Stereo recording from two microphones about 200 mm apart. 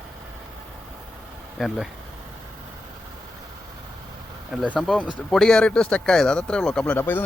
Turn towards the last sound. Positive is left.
turn(degrees=10)  # may be behind; listen again after turning